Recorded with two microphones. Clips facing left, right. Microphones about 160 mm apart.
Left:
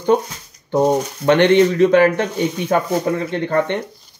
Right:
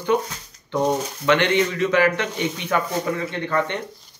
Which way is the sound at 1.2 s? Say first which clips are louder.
Left 7 dB; 50° left (ahead or behind).